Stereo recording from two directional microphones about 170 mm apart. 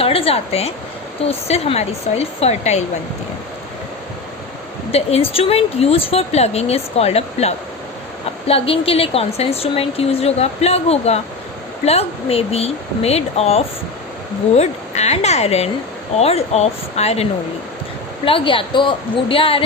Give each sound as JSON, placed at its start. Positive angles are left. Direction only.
{"t": 0.0, "sound": "a woman's voice", "side_deg": 35}
{"t": 4.9, "sound": "a woman's voice", "side_deg": 35}
{"t": 18.3, "sound": "a woman's voice", "side_deg": 30}